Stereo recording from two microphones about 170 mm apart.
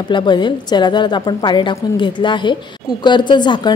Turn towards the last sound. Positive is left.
turn(degrees=25)  # may be behind; listen again after turning